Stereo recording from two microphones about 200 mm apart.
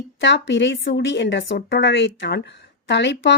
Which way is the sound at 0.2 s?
65° left (ahead or behind).